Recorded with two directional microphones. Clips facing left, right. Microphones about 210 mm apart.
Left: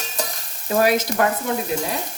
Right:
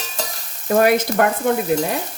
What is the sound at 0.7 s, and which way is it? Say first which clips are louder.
Frying: right 3 dB; 55° right (ahead or behind).